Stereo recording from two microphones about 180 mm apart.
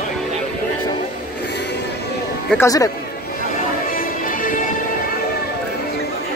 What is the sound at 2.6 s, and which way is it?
Speech, 20° left (ahead or behind).